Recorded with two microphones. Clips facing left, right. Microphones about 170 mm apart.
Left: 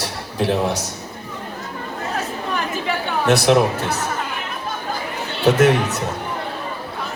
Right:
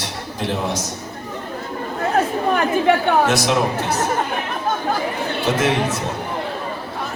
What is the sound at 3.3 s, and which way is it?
Speech, 60° left (ahead or behind).